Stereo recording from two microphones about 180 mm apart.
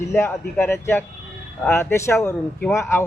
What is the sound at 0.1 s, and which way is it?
Speech, 15° left (ahead or behind).